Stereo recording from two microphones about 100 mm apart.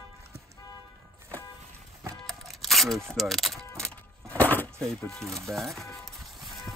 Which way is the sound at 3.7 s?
10° left (ahead or behind).